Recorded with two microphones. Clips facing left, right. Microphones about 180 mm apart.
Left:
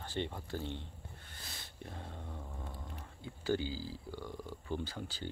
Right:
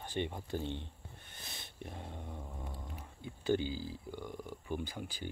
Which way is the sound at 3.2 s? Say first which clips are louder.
Right 2 dB; 20° right (ahead or behind).